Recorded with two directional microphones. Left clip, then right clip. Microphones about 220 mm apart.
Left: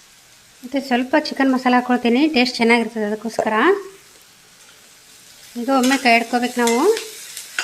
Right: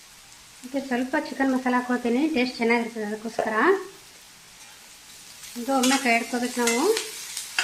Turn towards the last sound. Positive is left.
turn(degrees=40)  # may be behind; listen again after turning